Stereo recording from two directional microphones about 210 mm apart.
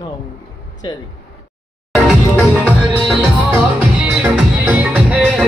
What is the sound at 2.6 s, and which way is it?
Music, centre (ahead or behind).